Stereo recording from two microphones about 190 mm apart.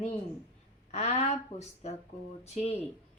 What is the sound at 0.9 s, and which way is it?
Speech, 35° left (ahead or behind).